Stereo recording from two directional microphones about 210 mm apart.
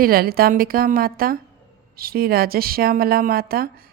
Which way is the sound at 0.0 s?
45° right (ahead or behind).